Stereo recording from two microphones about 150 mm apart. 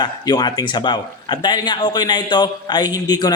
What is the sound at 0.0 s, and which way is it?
A man's voice, 30° left (ahead or behind).